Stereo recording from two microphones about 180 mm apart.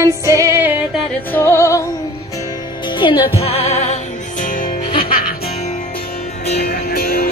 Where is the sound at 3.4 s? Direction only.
35° left (ahead or behind).